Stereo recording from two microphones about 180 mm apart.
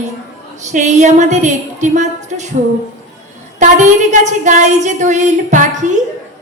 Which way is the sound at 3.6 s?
45° right (ahead or behind).